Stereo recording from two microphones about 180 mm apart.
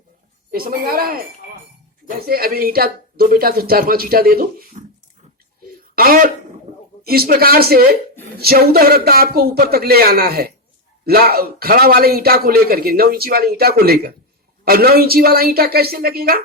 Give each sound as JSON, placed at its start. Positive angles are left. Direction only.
{"t": 0.5, "sound": "a man's voice", "side_deg": -55}
{"t": 6.0, "sound": "a man's voice", "side_deg": -55}